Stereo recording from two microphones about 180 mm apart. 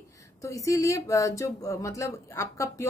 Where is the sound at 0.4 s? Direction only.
15° left (ahead or behind).